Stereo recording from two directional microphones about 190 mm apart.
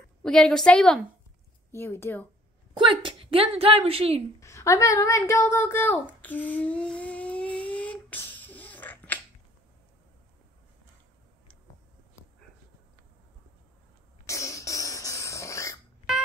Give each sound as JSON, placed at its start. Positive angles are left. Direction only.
{"t": 0.2, "sound": "a woman's voice", "side_deg": 5}
{"t": 2.8, "sound": "a woman's voice", "side_deg": -25}
{"t": 4.4, "sound": "a sound", "side_deg": 15}
{"t": 14.2, "sound": "cough", "side_deg": 15}